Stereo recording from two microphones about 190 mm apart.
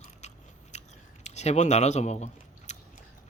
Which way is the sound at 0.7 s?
35° left (ahead or behind).